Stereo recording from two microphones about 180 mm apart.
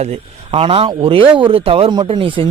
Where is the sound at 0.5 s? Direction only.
30° right (ahead or behind).